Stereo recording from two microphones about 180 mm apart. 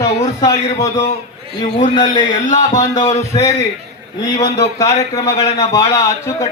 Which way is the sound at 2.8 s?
20° left (ahead or behind).